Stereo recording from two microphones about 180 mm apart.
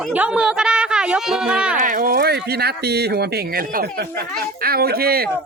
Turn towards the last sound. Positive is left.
turn(degrees=-55)  # may be behind; listen again after turning